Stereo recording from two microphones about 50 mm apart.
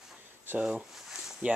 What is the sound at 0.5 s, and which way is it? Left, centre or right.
Speech, right.